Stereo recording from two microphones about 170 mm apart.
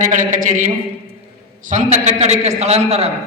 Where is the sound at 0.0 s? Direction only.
50° right (ahead or behind).